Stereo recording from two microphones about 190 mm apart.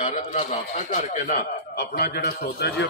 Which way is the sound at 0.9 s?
45° left (ahead or behind).